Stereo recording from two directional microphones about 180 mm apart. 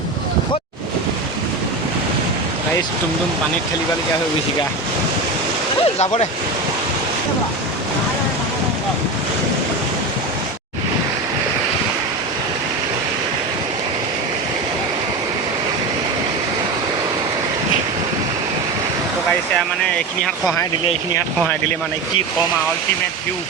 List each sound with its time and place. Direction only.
5.8 s speech: 35° left (ahead or behind)